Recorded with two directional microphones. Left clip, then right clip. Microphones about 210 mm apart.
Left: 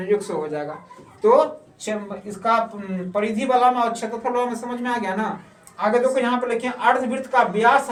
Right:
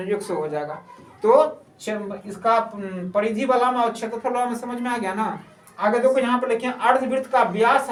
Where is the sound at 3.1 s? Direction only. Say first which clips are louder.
Even; 15° right (ahead or behind).